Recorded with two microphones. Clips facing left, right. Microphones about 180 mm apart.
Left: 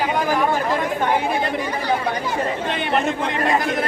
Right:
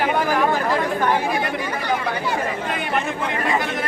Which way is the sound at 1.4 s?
30° left (ahead or behind).